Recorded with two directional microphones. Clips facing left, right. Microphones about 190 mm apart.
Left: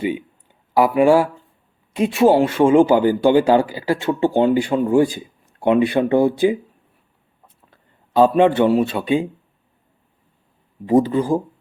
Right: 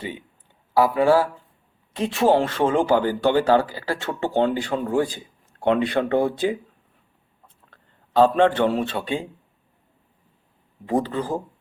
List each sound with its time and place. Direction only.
0.7 s speech: 15° left (ahead or behind)
7.4 s a sound: 10° left (ahead or behind)
10.8 s speech: 10° left (ahead or behind)